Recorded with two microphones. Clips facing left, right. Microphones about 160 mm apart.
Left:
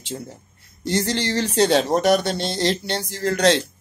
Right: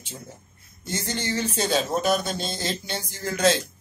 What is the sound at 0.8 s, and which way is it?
Speech, 70° left (ahead or behind).